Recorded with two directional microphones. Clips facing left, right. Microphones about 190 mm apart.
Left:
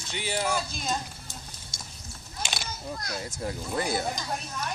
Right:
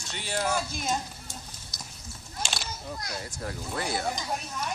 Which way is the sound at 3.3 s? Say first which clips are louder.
Left 3 dB; 20° left (ahead or behind).